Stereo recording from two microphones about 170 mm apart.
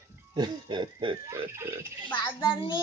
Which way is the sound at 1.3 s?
15° right (ahead or behind).